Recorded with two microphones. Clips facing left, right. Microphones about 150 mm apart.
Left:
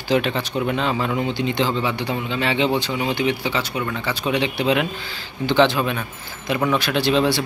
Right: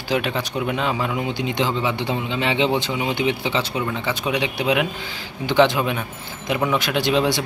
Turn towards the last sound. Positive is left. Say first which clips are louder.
# left 1 dB
turn(degrees=-15)  # may be behind; listen again after turning